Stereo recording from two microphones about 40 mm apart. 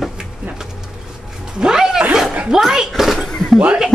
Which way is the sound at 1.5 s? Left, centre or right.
Centre.